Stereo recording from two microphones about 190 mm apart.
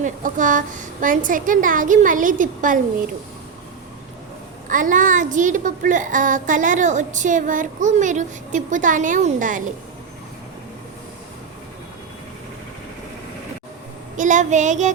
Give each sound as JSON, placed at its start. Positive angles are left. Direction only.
{"t": 0.0, "sound": "a child's voice", "side_deg": -45}
{"t": 4.7, "sound": "a child's voice", "side_deg": -45}
{"t": 14.2, "sound": "a sound", "side_deg": -40}